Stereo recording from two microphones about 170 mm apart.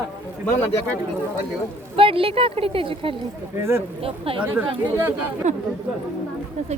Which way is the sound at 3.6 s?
15° right (ahead or behind).